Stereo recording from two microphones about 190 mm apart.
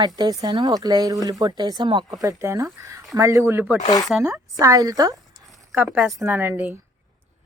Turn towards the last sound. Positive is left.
turn(degrees=-10)  # may be behind; listen again after turning